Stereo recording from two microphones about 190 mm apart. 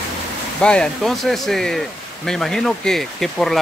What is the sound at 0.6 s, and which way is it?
Speech, 5° left (ahead or behind).